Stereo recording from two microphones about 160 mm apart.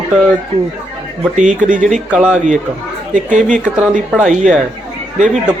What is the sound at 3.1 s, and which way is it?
Speech, 50° right (ahead or behind).